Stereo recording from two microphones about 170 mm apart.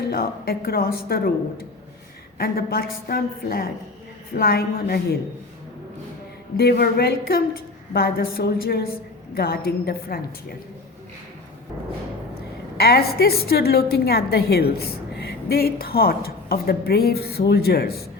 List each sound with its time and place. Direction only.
0.1 s a woman's voice: 60° left (ahead or behind)
6.6 s a woman's voice: 65° left (ahead or behind)
12.3 s a woman's voice: 65° left (ahead or behind)